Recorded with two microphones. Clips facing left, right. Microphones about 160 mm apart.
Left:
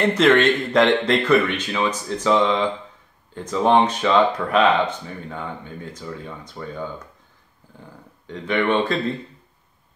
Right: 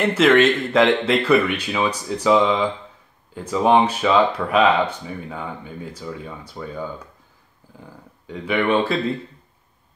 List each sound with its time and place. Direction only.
0.0 s speech: 5° right (ahead or behind)
8.3 s speech: 10° right (ahead or behind)